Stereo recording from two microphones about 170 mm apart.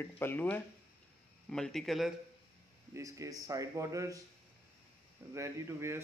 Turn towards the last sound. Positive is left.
turn(degrees=-15)  # may be behind; listen again after turning